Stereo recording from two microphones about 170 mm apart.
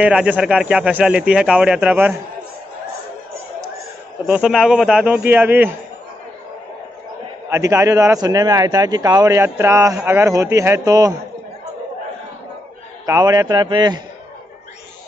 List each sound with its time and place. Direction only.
0.0 s speech: 5° right (ahead or behind)
4.3 s a man's voice: centre (ahead or behind)
7.4 s a man's voice: 15° right (ahead or behind)
13.0 s a man's voice: 20° right (ahead or behind)